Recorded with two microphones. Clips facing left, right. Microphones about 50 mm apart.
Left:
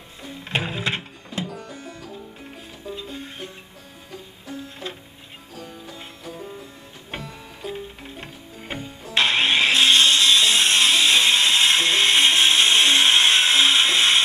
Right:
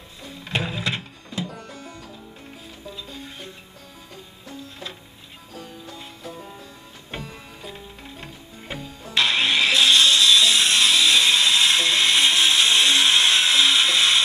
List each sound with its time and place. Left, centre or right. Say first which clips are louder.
0.2 s music: left 1 dB; left
2.9 s music: left 5 dB; left
7.6 s music: left 8 dB; centre
8.7 s music: left 1 dB; centre
9.1 s music: left 1 dB; left